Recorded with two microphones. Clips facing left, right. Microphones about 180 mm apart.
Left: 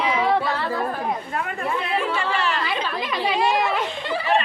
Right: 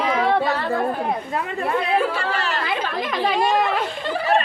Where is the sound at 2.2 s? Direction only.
40° right (ahead or behind).